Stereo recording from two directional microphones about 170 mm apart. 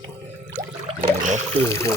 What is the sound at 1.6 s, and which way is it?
Speech, 15° left (ahead or behind).